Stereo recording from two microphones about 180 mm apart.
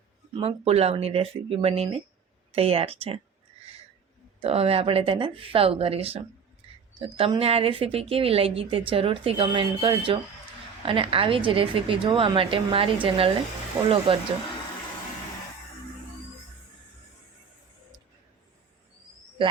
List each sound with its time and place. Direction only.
0.3 s a woman's voice: 35° right (ahead or behind)
4.4 s a woman's voice: 35° right (ahead or behind)
13.8 s a woman's voice: 20° right (ahead or behind)